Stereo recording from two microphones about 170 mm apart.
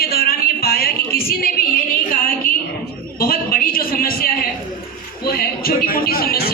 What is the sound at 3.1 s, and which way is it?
Speech, 60° left (ahead or behind).